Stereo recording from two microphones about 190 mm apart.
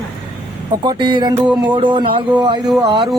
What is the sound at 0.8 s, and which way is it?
Speech, 25° right (ahead or behind).